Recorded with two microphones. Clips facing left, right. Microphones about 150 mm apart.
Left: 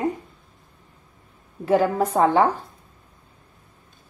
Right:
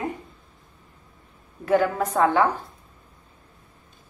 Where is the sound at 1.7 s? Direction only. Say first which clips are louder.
Left 2 dB; 25° left (ahead or behind).